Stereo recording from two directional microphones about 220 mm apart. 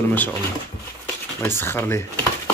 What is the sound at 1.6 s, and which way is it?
Speech, 10° left (ahead or behind).